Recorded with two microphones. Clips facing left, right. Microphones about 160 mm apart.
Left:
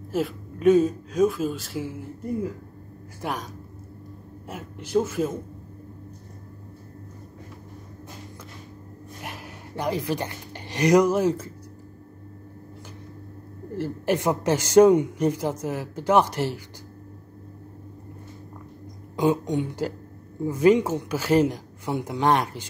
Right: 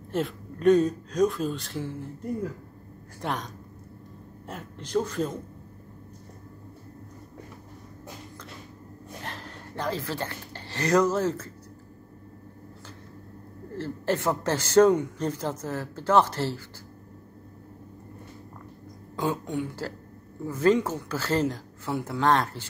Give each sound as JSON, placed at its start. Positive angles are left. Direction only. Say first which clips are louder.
{"t": 0.1, "sound": "speech", "louder": "left 2 dB", "side_deg": 5}
{"t": 3.2, "sound": "a woman's voice", "louder": "left 1 dB", "side_deg": 5}
{"t": 4.5, "sound": "a woman's voice", "louder": "left 3 dB", "side_deg": 10}
{"t": 9.2, "sound": "speech", "louder": "left 2 dB", "side_deg": 10}
{"t": 13.7, "sound": "a woman's voice", "louder": "left 3 dB", "side_deg": 10}
{"t": 19.1, "sound": "a woman's voice", "louder": "left 6 dB", "side_deg": 15}